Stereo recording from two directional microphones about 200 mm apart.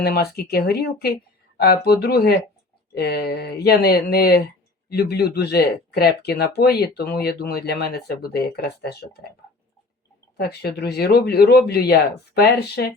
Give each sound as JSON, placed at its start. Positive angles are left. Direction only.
{"t": 0.0, "sound": "speech", "side_deg": 50}
{"t": 10.3, "sound": "speech", "side_deg": 50}